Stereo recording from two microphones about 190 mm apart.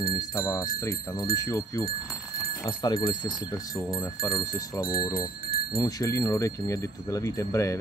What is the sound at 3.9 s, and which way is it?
Speech, 20° left (ahead or behind).